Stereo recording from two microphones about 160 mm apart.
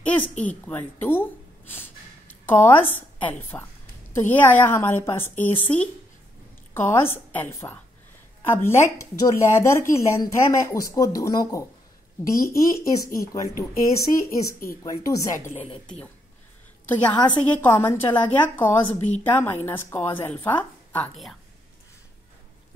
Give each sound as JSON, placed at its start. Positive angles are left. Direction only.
{"t": 0.0, "sound": "a sound", "side_deg": 10}
{"t": 0.4, "sound": "speech", "side_deg": 10}
{"t": 16.8, "sound": "a woman's voice", "side_deg": 10}
{"t": 18.9, "sound": "speech", "side_deg": 45}
{"t": 19.2, "sound": "speech", "side_deg": 10}